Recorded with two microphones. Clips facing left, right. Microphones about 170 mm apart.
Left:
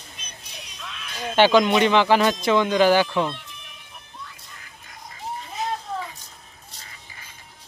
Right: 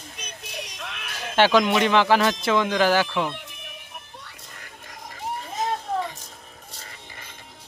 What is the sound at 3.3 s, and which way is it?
Music, 60° right (ahead or behind).